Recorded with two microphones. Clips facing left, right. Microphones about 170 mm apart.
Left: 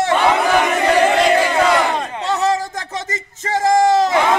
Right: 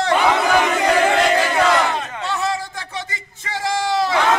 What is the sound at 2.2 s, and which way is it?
Music, 40° left (ahead or behind).